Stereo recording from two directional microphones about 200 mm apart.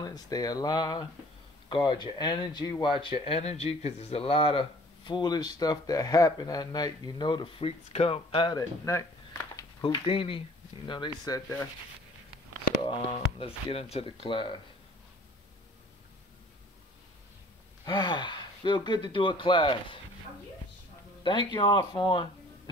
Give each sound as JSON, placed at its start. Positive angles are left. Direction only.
{"t": 0.0, "sound": "speech", "side_deg": 20}
{"t": 12.8, "sound": "speech", "side_deg": 25}
{"t": 17.8, "sound": "speech", "side_deg": 20}
{"t": 21.2, "sound": "speech", "side_deg": 25}